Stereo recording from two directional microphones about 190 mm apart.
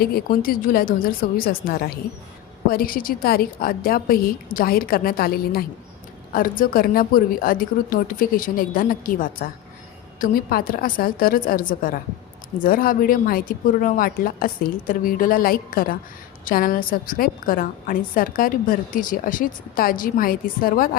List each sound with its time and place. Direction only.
0.0 s a woman's voice: 55° left (ahead or behind)